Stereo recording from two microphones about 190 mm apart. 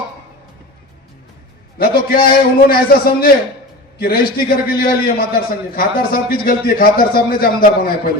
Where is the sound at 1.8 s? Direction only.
50° left (ahead or behind).